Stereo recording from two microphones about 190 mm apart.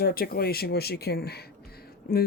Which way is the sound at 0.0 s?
50° left (ahead or behind).